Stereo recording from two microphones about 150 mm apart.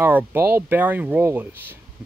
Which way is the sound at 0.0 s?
15° right (ahead or behind).